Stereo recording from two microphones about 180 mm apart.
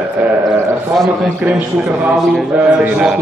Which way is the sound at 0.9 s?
Centre (ahead or behind).